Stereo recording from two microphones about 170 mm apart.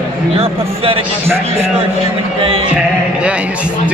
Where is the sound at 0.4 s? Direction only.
35° right (ahead or behind).